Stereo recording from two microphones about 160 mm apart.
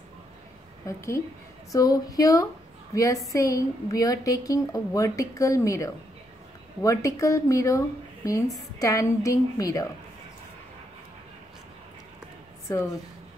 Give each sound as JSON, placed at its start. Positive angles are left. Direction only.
{"t": 0.8, "sound": "a woman's voice", "side_deg": 20}